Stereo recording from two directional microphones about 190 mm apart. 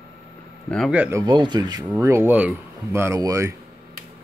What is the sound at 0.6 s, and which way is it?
Speech, centre (ahead or behind).